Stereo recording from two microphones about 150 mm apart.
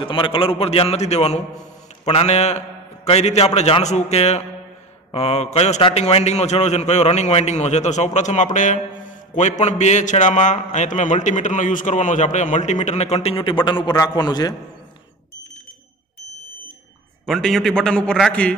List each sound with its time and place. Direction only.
0.0 s a man's voice: 35° left (ahead or behind)
17.3 s a man's voice: centre (ahead or behind)